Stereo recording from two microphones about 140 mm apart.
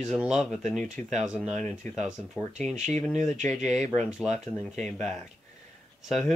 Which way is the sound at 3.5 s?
55° right (ahead or behind).